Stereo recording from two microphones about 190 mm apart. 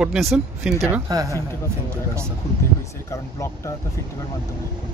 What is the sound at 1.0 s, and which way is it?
Speech, 15° right (ahead or behind).